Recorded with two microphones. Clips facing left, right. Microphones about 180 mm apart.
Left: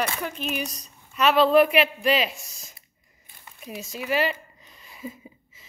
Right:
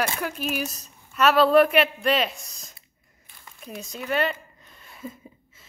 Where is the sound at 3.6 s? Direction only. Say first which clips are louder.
Left 1 dB; centre (ahead or behind).